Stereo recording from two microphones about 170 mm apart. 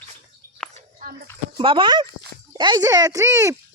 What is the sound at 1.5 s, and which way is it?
Speech, 30° right (ahead or behind).